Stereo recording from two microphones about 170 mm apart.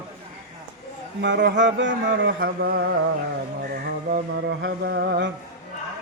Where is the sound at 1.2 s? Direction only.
90° right.